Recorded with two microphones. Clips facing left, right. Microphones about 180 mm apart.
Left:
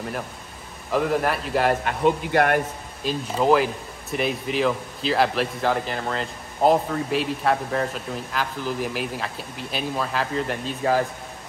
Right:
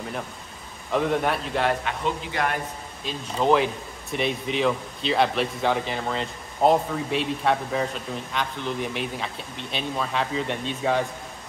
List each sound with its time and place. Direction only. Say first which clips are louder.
0.9 s speech: left 1 dB; centre (ahead or behind)
1.9 s speech: left 7 dB; 55° left (ahead or behind)
3.0 s speech: left 3 dB; 5° left (ahead or behind)